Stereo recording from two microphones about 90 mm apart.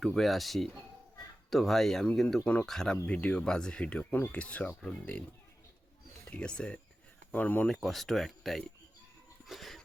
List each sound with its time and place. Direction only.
0.0 s speech: centre (ahead or behind)
6.3 s speech: 10° left (ahead or behind)
7.7 s speech: centre (ahead or behind)
9.5 s a sound: centre (ahead or behind)